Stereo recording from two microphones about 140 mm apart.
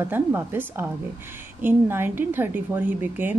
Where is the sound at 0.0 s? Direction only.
15° right (ahead or behind).